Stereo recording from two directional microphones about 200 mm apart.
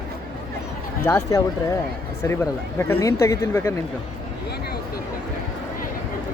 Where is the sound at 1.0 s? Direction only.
15° left (ahead or behind).